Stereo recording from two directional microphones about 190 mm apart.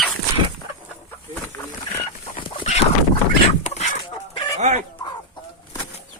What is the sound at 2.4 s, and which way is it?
Chicken, 25° left (ahead or behind).